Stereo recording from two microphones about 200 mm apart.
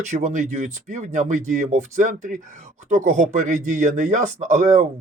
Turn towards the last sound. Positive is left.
turn(degrees=-35)  # may be behind; listen again after turning